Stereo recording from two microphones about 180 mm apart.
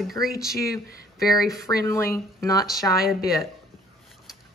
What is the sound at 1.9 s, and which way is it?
Speech, 15° left (ahead or behind).